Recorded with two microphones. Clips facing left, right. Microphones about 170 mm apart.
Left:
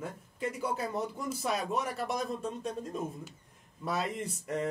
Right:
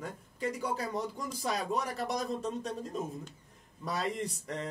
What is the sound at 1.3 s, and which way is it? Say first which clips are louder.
Speech: left 1 dB; 5° left (ahead or behind).